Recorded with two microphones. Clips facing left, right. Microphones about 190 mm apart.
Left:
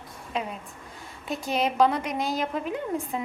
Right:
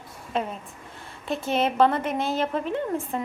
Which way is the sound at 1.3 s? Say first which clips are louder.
Right 2 dB; centre (ahead or behind).